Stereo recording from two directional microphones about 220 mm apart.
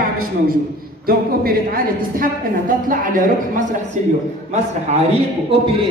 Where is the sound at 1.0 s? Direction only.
45° right (ahead or behind).